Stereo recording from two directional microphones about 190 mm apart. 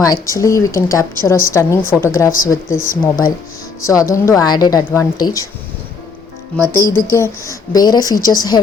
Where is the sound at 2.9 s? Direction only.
50° left (ahead or behind).